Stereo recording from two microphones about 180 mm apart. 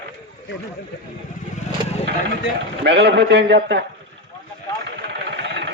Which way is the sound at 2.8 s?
70° right (ahead or behind).